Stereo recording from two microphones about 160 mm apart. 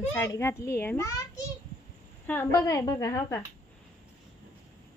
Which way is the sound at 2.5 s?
20° left (ahead or behind).